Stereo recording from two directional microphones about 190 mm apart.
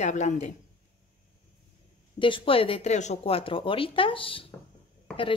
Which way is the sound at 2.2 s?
25° left (ahead or behind).